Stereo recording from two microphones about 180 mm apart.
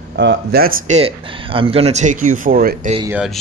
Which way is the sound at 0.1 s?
75° right (ahead or behind).